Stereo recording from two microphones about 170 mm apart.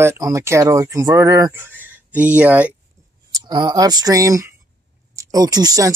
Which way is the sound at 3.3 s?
25° right (ahead or behind).